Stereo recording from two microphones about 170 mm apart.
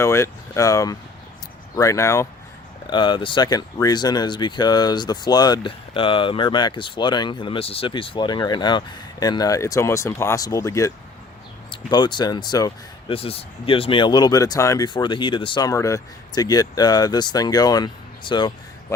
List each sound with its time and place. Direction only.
0.0 s speech: 15° left (ahead or behind)
2.8 s speech: 25° left (ahead or behind)
13.1 s speech: 35° left (ahead or behind)